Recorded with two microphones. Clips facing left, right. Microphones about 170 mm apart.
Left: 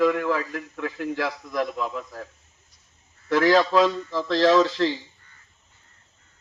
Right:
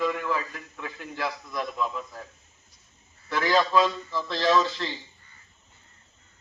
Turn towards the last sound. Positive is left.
turn(degrees=90)